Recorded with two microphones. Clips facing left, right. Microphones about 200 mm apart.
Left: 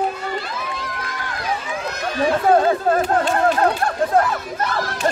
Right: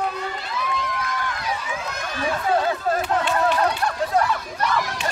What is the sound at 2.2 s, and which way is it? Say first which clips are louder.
Chatter: left 6 dB; 45° left (ahead or behind).